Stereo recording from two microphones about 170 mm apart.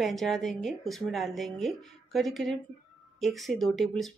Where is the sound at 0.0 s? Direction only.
Centre (ahead or behind).